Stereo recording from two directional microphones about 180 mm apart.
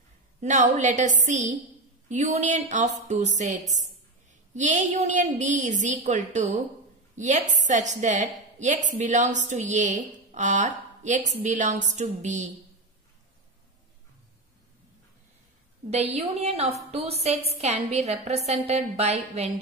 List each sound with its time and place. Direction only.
0.4 s a woman's voice: 40° right (ahead or behind)
4.6 s a woman's voice: 40° right (ahead or behind)
15.9 s a woman's voice: 35° right (ahead or behind)